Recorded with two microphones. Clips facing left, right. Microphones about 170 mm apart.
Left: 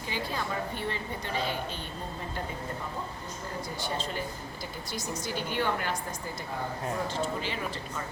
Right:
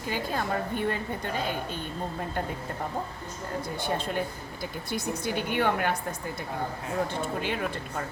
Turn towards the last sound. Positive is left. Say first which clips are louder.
# right 3 dB
turn(degrees=-55)  # may be behind; listen again after turning